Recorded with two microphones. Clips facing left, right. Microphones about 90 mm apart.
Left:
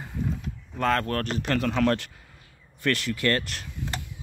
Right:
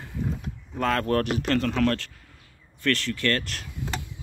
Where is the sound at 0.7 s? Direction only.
Centre (ahead or behind).